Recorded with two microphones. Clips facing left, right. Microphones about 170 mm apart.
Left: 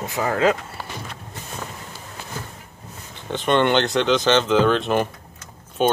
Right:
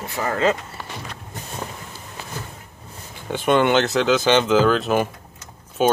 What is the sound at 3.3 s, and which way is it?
Speech, 10° right (ahead or behind).